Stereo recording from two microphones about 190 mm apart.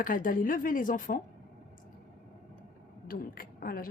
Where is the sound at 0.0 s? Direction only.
45° left (ahead or behind).